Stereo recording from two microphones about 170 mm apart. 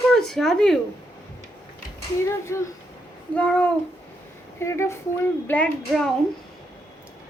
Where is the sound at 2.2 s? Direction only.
15° left (ahead or behind).